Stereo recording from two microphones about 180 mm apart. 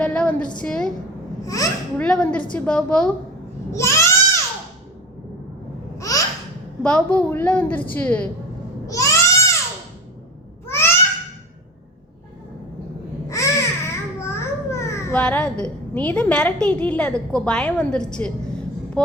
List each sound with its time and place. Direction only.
0.0 s a sound: 5° left (ahead or behind)
0.6 s a woman's voice: 5° left (ahead or behind)
1.5 s speech: 20° left (ahead or behind)
2.0 s a woman's voice: 5° left (ahead or behind)
3.7 s a sound: 15° left (ahead or behind)
6.0 s babbling: 20° left (ahead or behind)
6.8 s a woman's voice: 5° left (ahead or behind)
8.9 s a sound: 20° left (ahead or behind)
10.7 s babbling: 15° left (ahead or behind)
13.3 s a child's voice: 15° left (ahead or behind)